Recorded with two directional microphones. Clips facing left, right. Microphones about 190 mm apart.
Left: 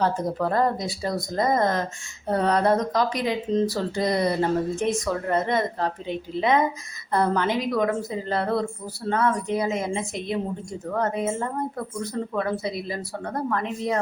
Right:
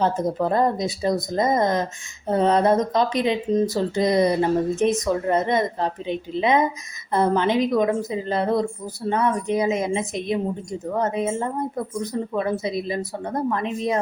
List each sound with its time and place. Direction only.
0.0 s speech: 20° right (ahead or behind)